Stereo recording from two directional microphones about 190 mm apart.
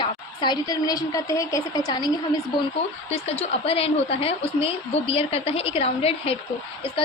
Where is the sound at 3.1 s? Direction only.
35° left (ahead or behind).